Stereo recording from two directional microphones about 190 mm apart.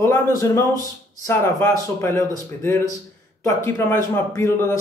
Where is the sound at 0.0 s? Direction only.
15° left (ahead or behind).